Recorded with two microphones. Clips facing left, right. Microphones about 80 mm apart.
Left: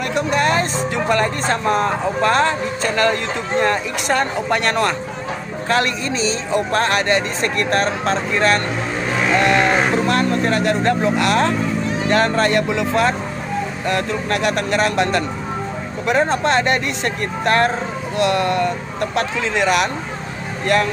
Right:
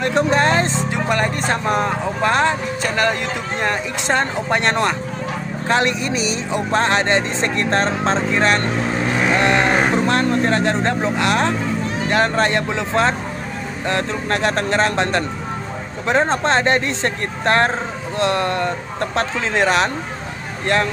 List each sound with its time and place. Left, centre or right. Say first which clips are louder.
0.0 s speech: right 2 dB; right